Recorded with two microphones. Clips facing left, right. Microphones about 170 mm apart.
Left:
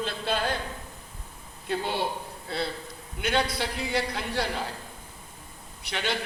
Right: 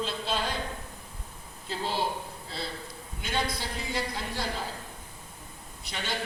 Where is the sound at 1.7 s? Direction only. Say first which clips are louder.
Left 3 dB; 60° left (ahead or behind).